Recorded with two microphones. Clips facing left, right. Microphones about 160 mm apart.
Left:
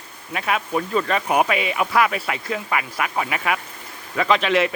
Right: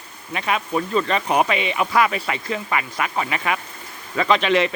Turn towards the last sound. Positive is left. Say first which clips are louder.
# right 1 dB
turn(degrees=5)  # may be behind; listen again after turning